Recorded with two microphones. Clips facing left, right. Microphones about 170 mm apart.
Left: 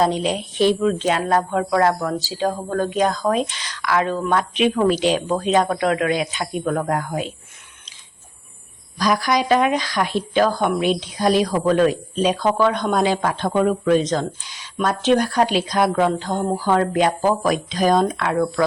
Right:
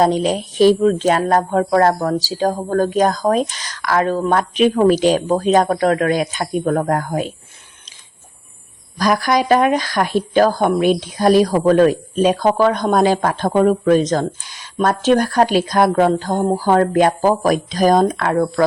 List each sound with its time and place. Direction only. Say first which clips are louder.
0.0 s speech: right 4 dB; 45° right (ahead or behind)
9.0 s speech: right 3 dB; 50° right (ahead or behind)